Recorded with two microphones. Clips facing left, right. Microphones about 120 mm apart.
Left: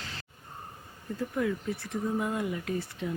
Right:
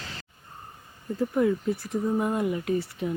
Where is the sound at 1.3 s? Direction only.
25° right (ahead or behind).